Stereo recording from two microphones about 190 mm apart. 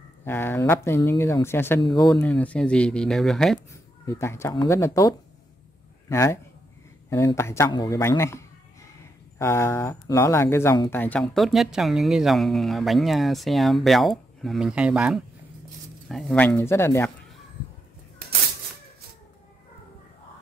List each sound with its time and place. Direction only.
0.2 s speech: 10° left (ahead or behind)
2.2 s speech: 5° left (ahead or behind)
4.0 s speech: 15° left (ahead or behind)